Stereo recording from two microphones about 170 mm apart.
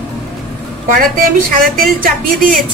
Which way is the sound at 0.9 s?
55° right (ahead or behind).